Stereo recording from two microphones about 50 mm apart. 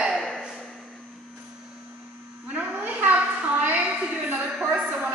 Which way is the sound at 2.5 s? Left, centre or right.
Right.